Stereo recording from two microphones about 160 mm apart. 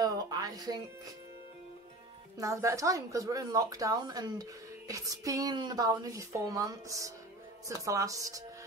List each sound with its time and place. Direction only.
0.0 s music: 25° right (ahead or behind)
2.3 s speech: 20° right (ahead or behind)